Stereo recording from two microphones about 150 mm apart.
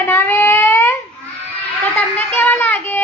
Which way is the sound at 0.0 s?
15° left (ahead or behind).